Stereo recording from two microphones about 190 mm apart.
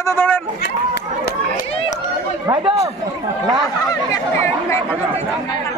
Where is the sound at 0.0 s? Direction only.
10° left (ahead or behind).